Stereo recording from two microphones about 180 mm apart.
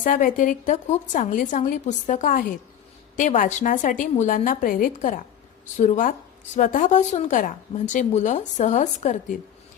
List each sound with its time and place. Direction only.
0.0 s a woman's voice: 45° left (ahead or behind)